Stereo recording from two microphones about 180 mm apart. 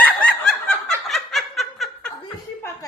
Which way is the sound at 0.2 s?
5° left (ahead or behind).